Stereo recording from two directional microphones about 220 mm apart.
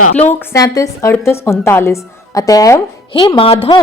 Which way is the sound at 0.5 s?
15° left (ahead or behind).